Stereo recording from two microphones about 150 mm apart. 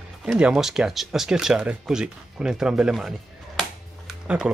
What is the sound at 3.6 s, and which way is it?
Music, 5° right (ahead or behind).